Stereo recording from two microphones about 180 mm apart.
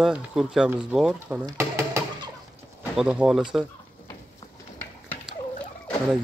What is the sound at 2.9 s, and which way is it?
Speech, 5° right (ahead or behind).